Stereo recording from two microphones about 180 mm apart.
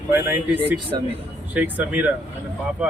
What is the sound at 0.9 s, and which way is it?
Speech, 25° right (ahead or behind).